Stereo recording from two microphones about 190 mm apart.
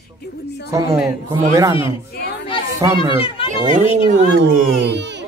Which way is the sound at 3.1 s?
30° left (ahead or behind).